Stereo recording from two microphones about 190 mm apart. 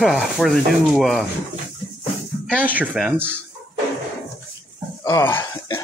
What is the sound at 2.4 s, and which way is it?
Speech, 10° right (ahead or behind).